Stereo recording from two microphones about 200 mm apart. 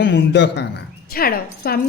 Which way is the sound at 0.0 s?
60° left (ahead or behind).